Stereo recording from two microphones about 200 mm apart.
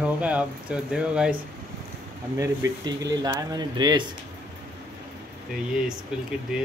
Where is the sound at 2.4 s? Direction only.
15° right (ahead or behind).